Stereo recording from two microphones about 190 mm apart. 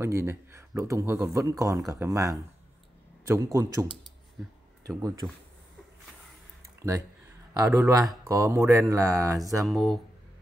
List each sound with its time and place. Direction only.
0.0 s speech: 15° right (ahead or behind)
7.5 s speech: 15° right (ahead or behind)
9.7 s speech: centre (ahead or behind)